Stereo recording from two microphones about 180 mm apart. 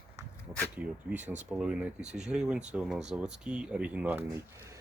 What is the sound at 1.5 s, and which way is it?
Speech, 5° right (ahead or behind).